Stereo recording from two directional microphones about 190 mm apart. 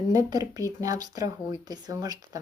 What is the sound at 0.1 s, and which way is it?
Speech, 20° right (ahead or behind).